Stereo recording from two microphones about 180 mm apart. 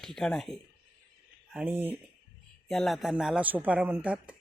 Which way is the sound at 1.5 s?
10° right (ahead or behind).